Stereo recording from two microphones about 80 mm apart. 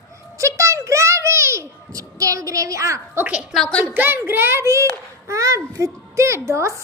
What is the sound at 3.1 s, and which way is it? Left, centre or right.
Speech, centre.